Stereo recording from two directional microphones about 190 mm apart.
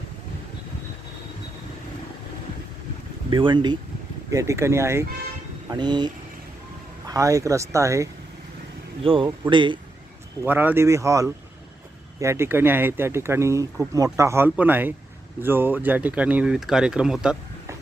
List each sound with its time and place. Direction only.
3.2 s speech: 25° right (ahead or behind)
7.1 s speech: 15° right (ahead or behind)
9.0 s speech: 25° right (ahead or behind)
10.4 s speech: 10° right (ahead or behind)